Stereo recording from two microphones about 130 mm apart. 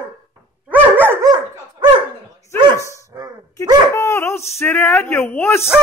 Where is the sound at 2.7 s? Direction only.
25° left (ahead or behind).